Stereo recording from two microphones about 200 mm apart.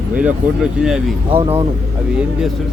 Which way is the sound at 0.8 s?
5° right (ahead or behind).